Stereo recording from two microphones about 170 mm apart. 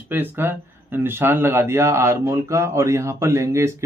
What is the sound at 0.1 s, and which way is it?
Speech, 10° right (ahead or behind).